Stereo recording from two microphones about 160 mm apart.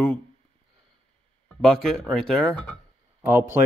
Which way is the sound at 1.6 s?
5° left (ahead or behind).